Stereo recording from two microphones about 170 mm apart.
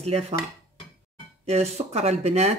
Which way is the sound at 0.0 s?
40° right (ahead or behind).